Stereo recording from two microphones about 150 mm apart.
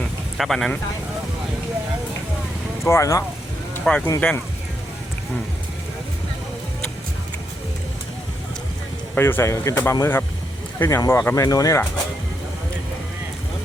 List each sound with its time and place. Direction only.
0.0 s a sound: centre (ahead or behind)
2.8 s speech: 20° left (ahead or behind)
3.8 s speech: 5° left (ahead or behind)
9.1 s speech: 15° left (ahead or behind)